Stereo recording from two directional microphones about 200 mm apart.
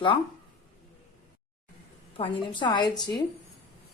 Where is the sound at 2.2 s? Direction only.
25° left (ahead or behind).